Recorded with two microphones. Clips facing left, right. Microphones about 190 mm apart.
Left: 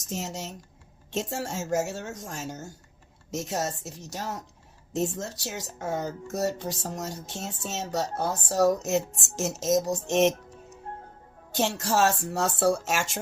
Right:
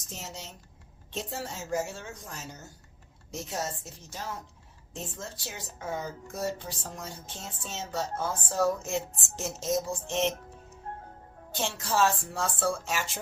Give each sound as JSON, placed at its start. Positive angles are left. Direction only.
{"t": 0.2, "sound": "speech", "side_deg": 45}
{"t": 5.0, "sound": "speech", "side_deg": 40}